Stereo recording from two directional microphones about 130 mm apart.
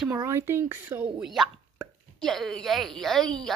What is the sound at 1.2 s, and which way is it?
A woman's voice, centre (ahead or behind).